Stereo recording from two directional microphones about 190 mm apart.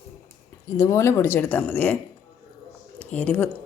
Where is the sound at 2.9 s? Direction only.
10° left (ahead or behind).